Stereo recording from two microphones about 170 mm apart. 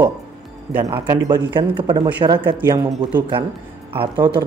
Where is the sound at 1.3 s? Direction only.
30° right (ahead or behind).